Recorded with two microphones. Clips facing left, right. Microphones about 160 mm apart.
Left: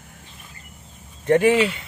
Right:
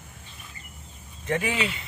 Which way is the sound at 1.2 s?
50° left (ahead or behind).